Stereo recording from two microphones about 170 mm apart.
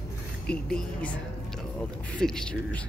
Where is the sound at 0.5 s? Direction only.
5° left (ahead or behind).